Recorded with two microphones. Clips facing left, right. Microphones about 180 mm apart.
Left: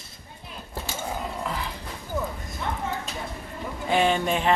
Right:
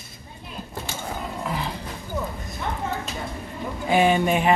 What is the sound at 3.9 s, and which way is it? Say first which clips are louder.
Speech: right 3 dB; 10° right (ahead or behind).